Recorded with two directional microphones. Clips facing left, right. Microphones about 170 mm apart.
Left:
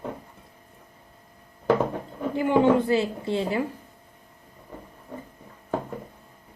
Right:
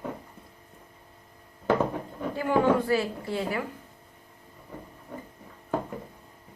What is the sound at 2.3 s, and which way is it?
A woman's voice, 20° left (ahead or behind).